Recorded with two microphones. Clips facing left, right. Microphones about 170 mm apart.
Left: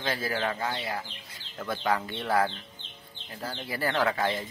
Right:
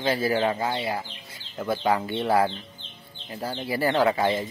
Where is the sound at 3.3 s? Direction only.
10° right (ahead or behind).